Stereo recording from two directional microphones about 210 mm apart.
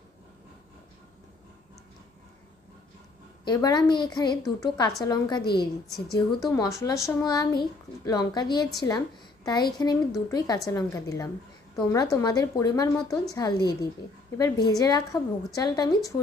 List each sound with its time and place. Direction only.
3.4 s a woman's voice: 20° left (ahead or behind)